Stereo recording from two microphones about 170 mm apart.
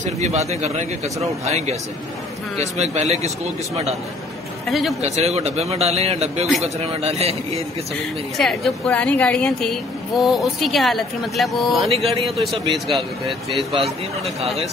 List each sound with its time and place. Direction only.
0.0 s speech: 40° right (ahead or behind)
2.8 s speech: 40° right (ahead or behind)
4.6 s a woman's voice: centre (ahead or behind)
5.0 s speech: 40° right (ahead or behind)
6.4 s a woman's voice: centre (ahead or behind)
6.9 s speech: 40° right (ahead or behind)
8.4 s a woman's voice: centre (ahead or behind)